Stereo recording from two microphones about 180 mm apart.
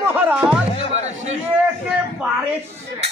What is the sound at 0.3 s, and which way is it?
Music, 5° right (ahead or behind).